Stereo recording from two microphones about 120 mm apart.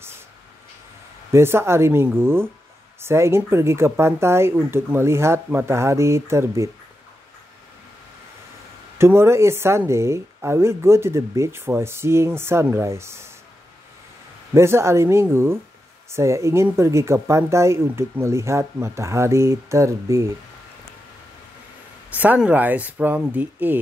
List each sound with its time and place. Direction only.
1.3 s a woman's voice: 20° right (ahead or behind)
8.9 s a woman's voice: 20° right (ahead or behind)
14.5 s a woman's voice: 25° right (ahead or behind)
22.1 s speech: 15° right (ahead or behind)